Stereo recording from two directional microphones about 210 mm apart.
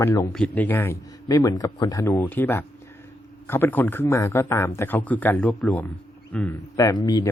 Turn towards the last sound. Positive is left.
turn(degrees=20)  # may be behind; listen again after turning